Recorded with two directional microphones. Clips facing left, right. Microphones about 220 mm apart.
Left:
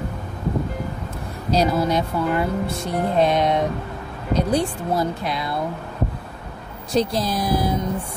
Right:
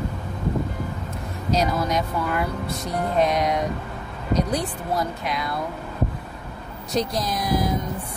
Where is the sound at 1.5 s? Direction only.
30° left (ahead or behind).